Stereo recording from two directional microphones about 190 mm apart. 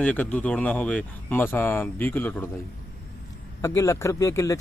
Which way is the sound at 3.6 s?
15° left (ahead or behind).